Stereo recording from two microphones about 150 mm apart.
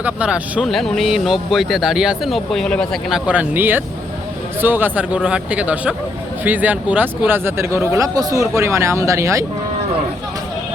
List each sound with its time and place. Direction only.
0.0 s speech: 10° right (ahead or behind)
0.7 s a man's voice: centre (ahead or behind)
3.2 s speech: 10° right (ahead or behind)